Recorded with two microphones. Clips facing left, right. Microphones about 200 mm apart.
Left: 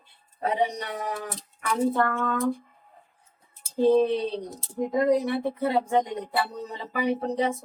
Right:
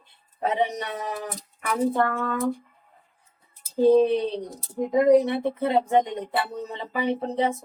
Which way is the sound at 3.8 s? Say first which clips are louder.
Right 3 dB; 10° right (ahead or behind).